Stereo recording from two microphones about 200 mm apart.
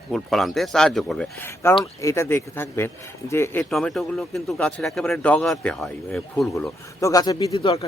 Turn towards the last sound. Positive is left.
turn(degrees=25)  # may be behind; listen again after turning